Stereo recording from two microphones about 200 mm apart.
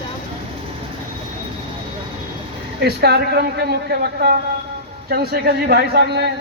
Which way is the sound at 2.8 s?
55° right (ahead or behind).